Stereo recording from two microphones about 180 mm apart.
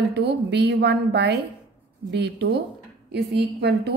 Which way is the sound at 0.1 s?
65° right (ahead or behind).